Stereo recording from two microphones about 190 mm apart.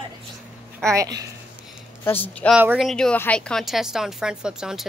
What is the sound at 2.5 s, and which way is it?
A woman's voice, 5° right (ahead or behind).